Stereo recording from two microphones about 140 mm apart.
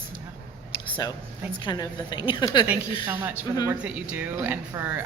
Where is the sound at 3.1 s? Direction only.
15° right (ahead or behind).